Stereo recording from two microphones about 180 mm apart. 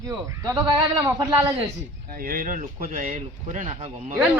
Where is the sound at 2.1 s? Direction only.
50° right (ahead or behind).